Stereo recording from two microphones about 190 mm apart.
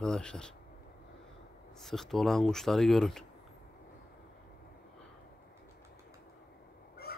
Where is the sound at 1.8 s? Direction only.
Centre (ahead or behind).